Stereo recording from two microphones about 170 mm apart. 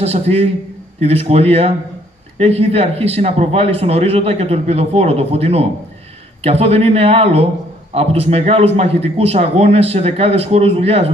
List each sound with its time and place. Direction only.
0.0 s speech: 35° right (ahead or behind)